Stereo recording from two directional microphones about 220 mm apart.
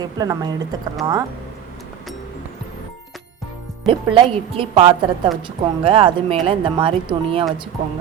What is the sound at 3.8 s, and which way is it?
Speech, 25° right (ahead or behind).